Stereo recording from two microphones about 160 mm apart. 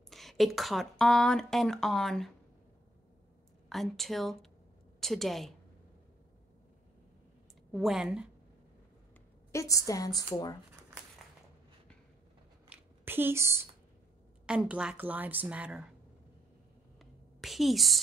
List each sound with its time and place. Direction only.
0.1 s a woman's voice: centre (ahead or behind)
3.6 s a woman's voice: centre (ahead or behind)
7.7 s a woman's voice: 5° right (ahead or behind)
9.5 s a woman's voice: 20° left (ahead or behind)
12.6 s a sound: 15° right (ahead or behind)
14.4 s a woman's voice: 5° right (ahead or behind)
17.0 s a sound: centre (ahead or behind)